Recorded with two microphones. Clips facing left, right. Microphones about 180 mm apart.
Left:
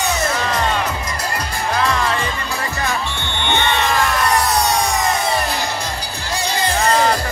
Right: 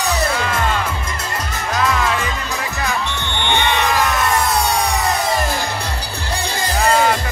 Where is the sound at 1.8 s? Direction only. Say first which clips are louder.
Right 1 dB; 5° right (ahead or behind).